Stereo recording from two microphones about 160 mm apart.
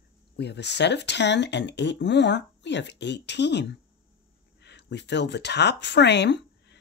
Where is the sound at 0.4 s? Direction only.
90° left.